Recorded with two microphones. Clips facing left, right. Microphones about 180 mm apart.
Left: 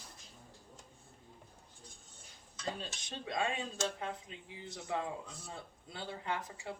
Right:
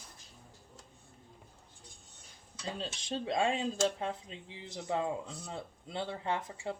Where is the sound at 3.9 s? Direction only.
25° right (ahead or behind).